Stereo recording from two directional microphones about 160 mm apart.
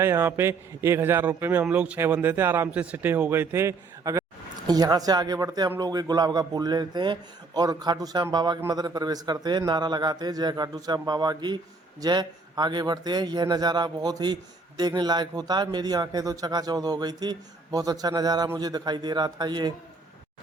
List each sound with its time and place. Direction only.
0.0 s a man's voice: 15° right (ahead or behind)